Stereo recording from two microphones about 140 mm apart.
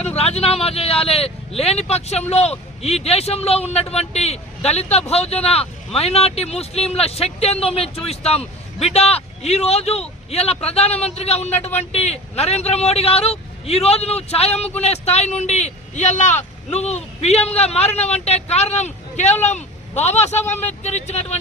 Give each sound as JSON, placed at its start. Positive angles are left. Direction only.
{"t": 0.0, "sound": "speech", "side_deg": 50}